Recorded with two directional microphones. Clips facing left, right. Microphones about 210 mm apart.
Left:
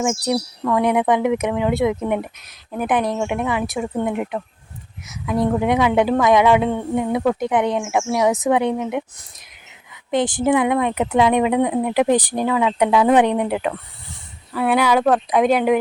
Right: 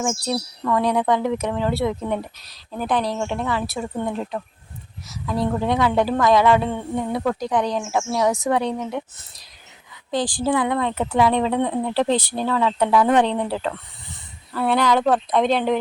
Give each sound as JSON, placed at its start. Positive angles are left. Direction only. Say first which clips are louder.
{"t": 0.0, "sound": "a woman's voice", "louder": "left 4 dB", "side_deg": 20}